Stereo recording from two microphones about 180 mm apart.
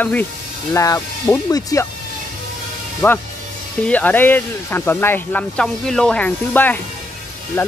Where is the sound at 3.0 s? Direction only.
15° left (ahead or behind).